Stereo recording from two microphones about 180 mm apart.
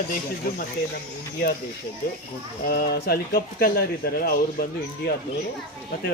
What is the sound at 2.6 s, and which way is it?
Speech, 55° left (ahead or behind).